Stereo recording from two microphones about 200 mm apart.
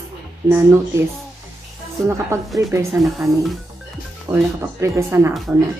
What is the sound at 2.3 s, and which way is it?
A woman's voice, 15° right (ahead or behind).